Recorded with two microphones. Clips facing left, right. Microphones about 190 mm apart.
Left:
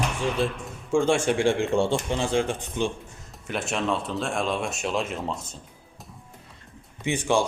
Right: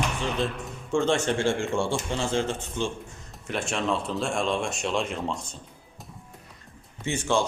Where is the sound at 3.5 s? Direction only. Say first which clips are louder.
Left 1 dB; centre (ahead or behind).